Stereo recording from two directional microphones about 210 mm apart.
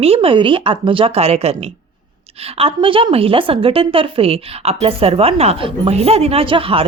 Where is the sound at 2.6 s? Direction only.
25° right (ahead or behind).